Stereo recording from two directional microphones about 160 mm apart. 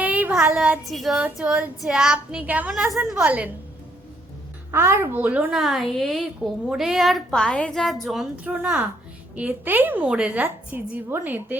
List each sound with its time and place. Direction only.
0.0 s a woman's voice: 10° right (ahead or behind)
4.7 s a woman's voice: 15° right (ahead or behind)